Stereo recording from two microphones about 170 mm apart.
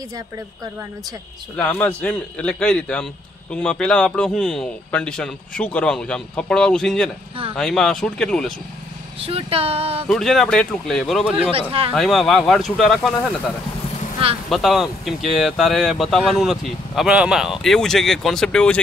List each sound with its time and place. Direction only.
1.6 s a man's voice: 10° left (ahead or behind)
9.2 s a sound: 35° right (ahead or behind)
10.0 s speech: centre (ahead or behind)
14.5 s speech: centre (ahead or behind)